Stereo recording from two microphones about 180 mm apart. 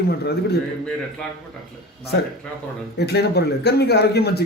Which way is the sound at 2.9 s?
65° left (ahead or behind).